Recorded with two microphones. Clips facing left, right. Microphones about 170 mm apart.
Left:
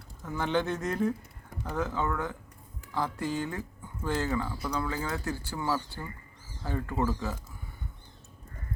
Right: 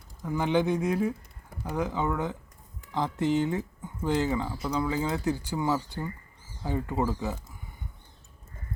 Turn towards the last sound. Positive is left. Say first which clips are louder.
# right 2 dB
turn(degrees=-20)  # may be behind; listen again after turning